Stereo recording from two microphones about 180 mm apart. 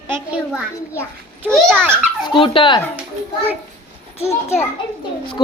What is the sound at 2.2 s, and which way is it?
Speech, 30° left (ahead or behind).